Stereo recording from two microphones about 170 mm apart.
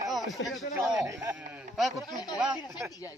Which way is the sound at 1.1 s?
20° right (ahead or behind).